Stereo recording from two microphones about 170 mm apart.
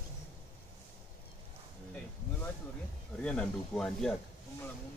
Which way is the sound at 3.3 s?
5° left (ahead or behind).